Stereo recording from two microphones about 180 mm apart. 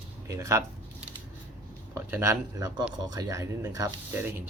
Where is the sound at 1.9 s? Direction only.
15° right (ahead or behind).